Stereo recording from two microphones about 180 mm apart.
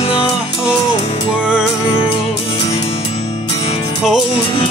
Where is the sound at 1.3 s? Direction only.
5° right (ahead or behind).